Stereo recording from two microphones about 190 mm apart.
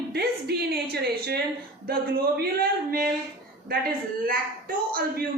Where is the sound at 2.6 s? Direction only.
50° right (ahead or behind).